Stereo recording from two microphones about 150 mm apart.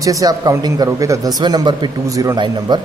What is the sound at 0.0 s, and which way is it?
Speech, 25° right (ahead or behind).